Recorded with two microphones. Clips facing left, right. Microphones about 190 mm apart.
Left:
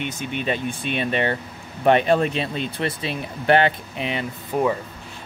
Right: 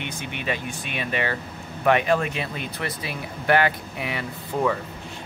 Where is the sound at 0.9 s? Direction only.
30° left (ahead or behind).